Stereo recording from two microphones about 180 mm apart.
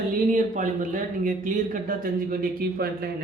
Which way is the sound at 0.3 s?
45° right (ahead or behind).